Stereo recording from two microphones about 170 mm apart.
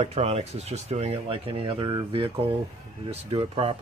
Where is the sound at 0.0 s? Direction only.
40° right (ahead or behind).